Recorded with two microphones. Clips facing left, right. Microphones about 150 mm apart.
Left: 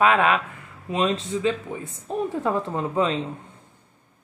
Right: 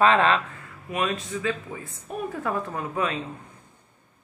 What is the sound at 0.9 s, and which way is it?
A woman's voice, 25° left (ahead or behind).